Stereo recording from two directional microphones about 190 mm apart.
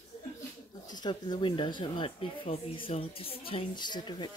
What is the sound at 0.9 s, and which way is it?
Speech, 20° left (ahead or behind).